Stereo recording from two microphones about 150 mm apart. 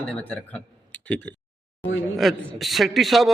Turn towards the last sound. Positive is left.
turn(degrees=0)  # may be behind; listen again after turning